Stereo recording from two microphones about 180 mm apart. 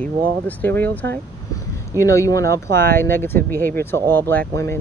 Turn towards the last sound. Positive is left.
turn(degrees=15)  # may be behind; listen again after turning